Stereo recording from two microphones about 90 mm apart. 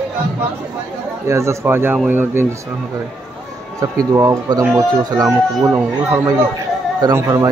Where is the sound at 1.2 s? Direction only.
30° right (ahead or behind).